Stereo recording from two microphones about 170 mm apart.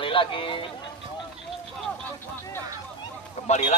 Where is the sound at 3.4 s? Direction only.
45° left (ahead or behind).